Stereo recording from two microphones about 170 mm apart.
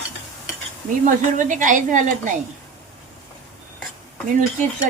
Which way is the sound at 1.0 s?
50° right (ahead or behind).